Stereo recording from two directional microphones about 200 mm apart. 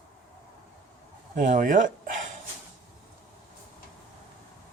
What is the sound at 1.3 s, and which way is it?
Speech, 40° right (ahead or behind).